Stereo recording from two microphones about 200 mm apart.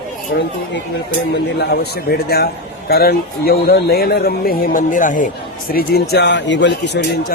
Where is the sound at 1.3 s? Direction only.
55° left (ahead or behind).